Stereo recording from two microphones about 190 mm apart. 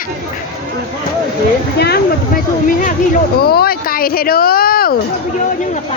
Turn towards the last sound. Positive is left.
turn(degrees=50)  # may be behind; listen again after turning